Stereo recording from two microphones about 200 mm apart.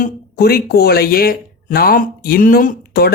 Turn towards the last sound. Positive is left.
turn(degrees=55)  # may be behind; listen again after turning